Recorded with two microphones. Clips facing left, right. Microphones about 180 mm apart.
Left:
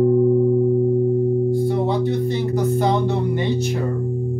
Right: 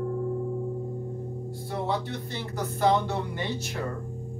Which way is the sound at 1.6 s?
15° left (ahead or behind).